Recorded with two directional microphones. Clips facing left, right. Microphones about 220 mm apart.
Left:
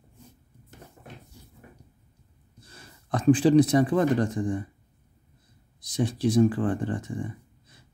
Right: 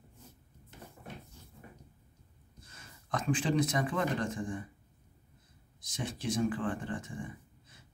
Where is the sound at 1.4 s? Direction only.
10° left (ahead or behind).